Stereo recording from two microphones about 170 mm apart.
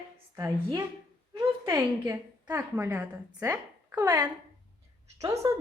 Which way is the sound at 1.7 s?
15° right (ahead or behind).